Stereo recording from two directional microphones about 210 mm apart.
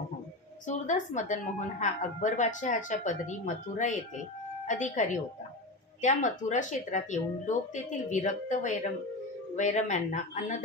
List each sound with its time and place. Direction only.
0.7 s a woman's voice: 35° left (ahead or behind)